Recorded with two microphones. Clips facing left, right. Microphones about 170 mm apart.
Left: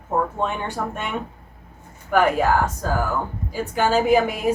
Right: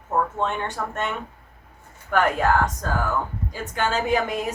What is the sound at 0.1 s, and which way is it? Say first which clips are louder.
Speech: left 1 dB; 10° left (ahead or behind).